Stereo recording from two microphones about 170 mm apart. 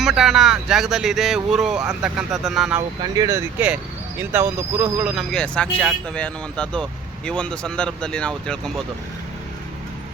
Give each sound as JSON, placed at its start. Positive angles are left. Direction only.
{"t": 0.0, "sound": "speech", "side_deg": 0}
{"t": 3.0, "sound": "speech", "side_deg": -20}
{"t": 5.3, "sound": "speech", "side_deg": 5}